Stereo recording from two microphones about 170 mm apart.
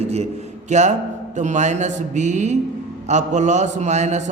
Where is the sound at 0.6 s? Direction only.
45° right (ahead or behind).